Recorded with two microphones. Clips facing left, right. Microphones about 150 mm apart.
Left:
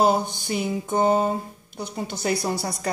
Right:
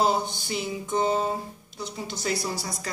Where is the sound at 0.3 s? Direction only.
50° left (ahead or behind).